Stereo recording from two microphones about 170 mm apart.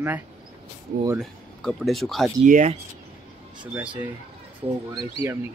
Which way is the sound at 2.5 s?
45° right (ahead or behind).